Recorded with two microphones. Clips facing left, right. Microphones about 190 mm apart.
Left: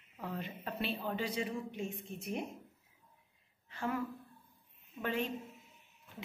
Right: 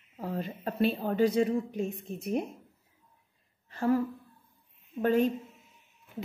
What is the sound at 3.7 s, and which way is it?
A woman's voice, 40° right (ahead or behind).